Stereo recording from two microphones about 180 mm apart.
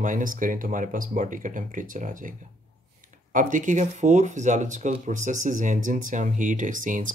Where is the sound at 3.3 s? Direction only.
45° right (ahead or behind).